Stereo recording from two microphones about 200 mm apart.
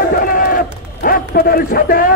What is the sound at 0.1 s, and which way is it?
Run, 45° left (ahead or behind).